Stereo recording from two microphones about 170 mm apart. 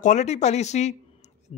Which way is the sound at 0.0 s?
45° left (ahead or behind).